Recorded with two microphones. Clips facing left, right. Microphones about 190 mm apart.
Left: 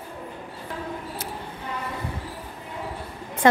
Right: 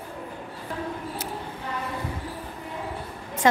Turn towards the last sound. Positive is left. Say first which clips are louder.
# left 3 dB
turn(degrees=55)  # may be behind; listen again after turning